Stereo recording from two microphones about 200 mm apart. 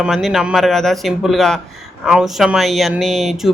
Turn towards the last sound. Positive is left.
turn(degrees=0)  # may be behind; listen again after turning